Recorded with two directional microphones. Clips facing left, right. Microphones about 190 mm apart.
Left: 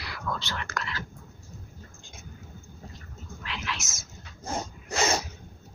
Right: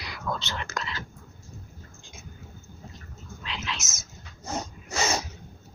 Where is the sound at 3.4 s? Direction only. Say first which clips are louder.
Even; 20° right (ahead or behind).